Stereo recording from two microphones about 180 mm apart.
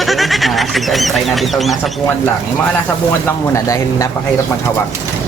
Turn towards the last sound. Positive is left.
turn(degrees=15)  # may be behind; listen again after turning